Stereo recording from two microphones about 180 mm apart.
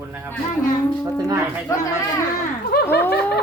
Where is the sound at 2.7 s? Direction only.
60° left (ahead or behind).